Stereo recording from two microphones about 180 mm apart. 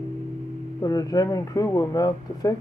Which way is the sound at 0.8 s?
20° left (ahead or behind).